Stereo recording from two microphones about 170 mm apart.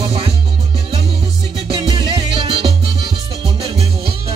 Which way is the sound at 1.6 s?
30° right (ahead or behind).